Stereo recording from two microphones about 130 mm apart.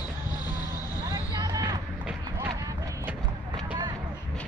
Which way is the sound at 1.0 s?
30° right (ahead or behind).